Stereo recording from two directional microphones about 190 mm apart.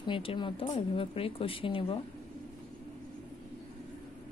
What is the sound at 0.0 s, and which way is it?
Speech, 25° left (ahead or behind).